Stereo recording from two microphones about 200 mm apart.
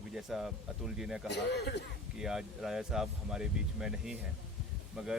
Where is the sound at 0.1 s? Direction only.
Centre (ahead or behind).